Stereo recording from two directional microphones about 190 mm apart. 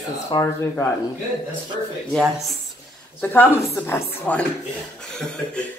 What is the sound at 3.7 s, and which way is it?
A man's voice, 10° left (ahead or behind).